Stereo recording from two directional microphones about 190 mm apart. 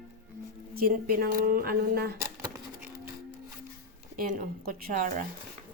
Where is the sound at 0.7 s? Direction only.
50° right (ahead or behind).